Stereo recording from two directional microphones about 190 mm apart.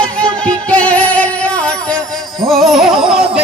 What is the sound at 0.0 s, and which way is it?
Music, 5° left (ahead or behind).